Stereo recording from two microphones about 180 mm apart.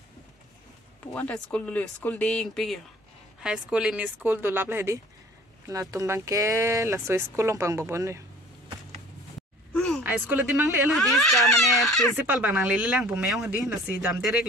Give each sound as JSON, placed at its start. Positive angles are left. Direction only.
{"t": 1.0, "sound": "speech", "side_deg": 5}
{"t": 9.7, "sound": "a sound", "side_deg": 5}
{"t": 10.0, "sound": "speech", "side_deg": -10}
{"t": 10.9, "sound": "speech", "side_deg": 0}